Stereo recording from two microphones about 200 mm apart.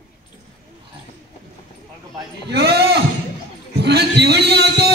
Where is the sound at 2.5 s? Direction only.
55° right (ahead or behind).